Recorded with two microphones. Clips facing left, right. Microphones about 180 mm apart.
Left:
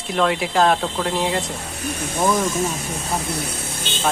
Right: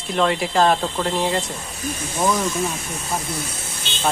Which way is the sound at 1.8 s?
65° left (ahead or behind).